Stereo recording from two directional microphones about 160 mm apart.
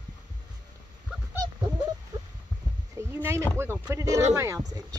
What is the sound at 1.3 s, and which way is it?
Dog, 25° right (ahead or behind).